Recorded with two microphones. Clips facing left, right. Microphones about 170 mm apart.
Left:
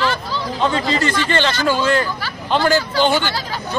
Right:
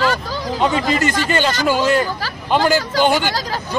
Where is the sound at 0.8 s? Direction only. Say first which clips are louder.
Right 1 dB; 45° right (ahead or behind).